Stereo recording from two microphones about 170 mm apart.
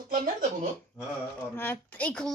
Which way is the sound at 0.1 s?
50° right (ahead or behind).